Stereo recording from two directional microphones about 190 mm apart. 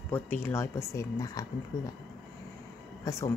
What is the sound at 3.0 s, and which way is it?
Speech, 15° left (ahead or behind).